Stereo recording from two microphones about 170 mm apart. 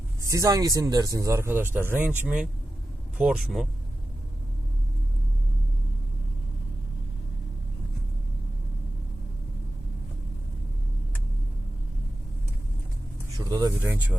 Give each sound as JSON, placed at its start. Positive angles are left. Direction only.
{"t": 0.2, "sound": "speech", "side_deg": -20}
{"t": 13.3, "sound": "speech", "side_deg": -20}